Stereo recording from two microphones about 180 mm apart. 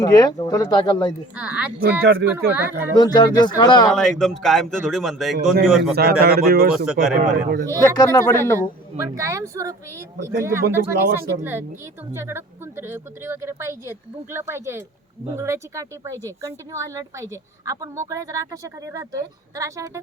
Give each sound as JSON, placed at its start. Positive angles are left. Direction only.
{"t": 0.0, "sound": "speech", "side_deg": 20}
{"t": 1.4, "sound": "a woman's voice", "side_deg": -10}
{"t": 1.8, "sound": "speech", "side_deg": -65}
{"t": 2.9, "sound": "speech", "side_deg": 20}
{"t": 3.9, "sound": "speech", "side_deg": 0}
{"t": 6.0, "sound": "a man's voice", "side_deg": -55}
{"t": 6.7, "sound": "speech", "side_deg": -5}
{"t": 7.2, "sound": "speech", "side_deg": -50}
{"t": 7.9, "sound": "speech", "side_deg": 15}
{"t": 9.0, "sound": "a woman's voice", "side_deg": -15}